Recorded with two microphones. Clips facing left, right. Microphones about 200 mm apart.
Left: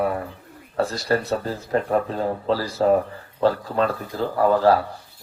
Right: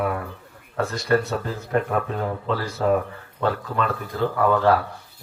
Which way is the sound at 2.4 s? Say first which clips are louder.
Left 3 dB; 35° left (ahead or behind).